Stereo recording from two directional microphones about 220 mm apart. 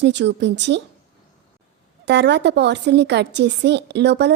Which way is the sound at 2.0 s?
50° right (ahead or behind).